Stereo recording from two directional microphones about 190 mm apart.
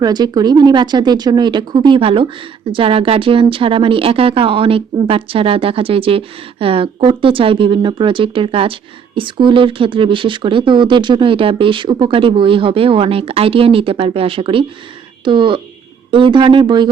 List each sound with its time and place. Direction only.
0.0 s speech: 20° right (ahead or behind)